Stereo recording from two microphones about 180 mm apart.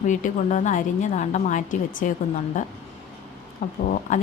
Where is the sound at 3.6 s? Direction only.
45° left (ahead or behind).